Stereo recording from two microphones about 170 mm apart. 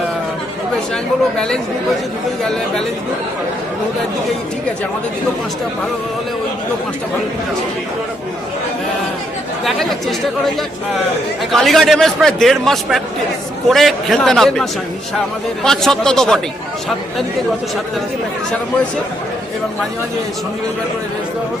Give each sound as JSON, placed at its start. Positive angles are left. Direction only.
{"t": 9.6, "sound": "a man's voice", "side_deg": 0}
{"t": 11.5, "sound": "a man's voice", "side_deg": 0}